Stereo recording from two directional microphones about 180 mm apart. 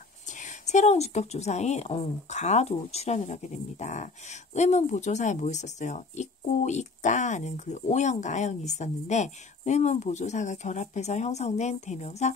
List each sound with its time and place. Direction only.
0.3 s a woman's voice: 45° left (ahead or behind)